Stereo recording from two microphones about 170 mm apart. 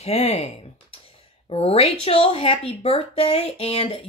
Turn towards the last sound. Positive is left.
turn(degrees=35)  # may be behind; listen again after turning